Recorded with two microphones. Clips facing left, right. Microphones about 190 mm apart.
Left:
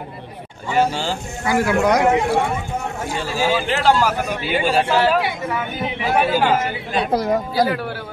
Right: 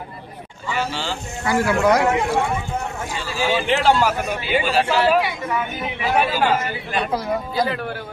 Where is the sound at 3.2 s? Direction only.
45° left (ahead or behind).